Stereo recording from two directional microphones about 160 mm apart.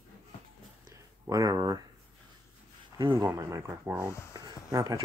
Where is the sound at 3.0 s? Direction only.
30° right (ahead or behind).